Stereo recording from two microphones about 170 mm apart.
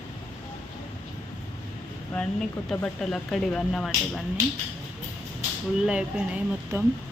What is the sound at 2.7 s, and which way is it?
A woman's voice, 5° left (ahead or behind).